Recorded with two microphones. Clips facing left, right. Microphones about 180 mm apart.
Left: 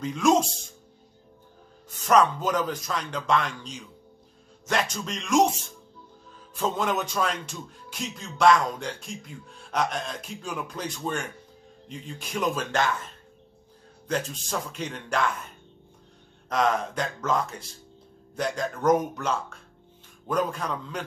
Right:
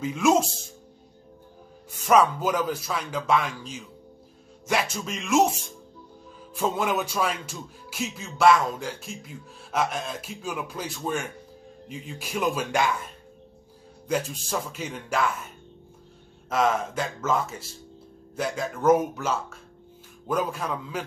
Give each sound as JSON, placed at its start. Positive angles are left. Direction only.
{"t": 0.0, "sound": "speech", "side_deg": -5}
{"t": 1.9, "sound": "speech", "side_deg": -10}